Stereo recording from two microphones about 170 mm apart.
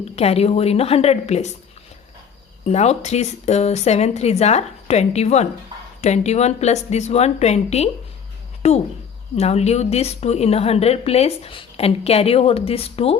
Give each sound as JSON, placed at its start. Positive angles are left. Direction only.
{"t": 0.2, "sound": "a woman's voice", "side_deg": 35}
{"t": 2.6, "sound": "a woman's voice", "side_deg": 40}